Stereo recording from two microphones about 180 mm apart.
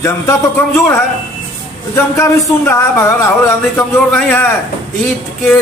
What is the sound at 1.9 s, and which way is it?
Speech, 15° left (ahead or behind).